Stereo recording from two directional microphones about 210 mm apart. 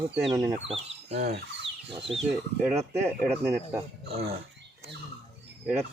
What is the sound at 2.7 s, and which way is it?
Speech, 15° right (ahead or behind).